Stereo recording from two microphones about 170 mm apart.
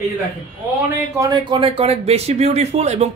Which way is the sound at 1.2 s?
25° right (ahead or behind).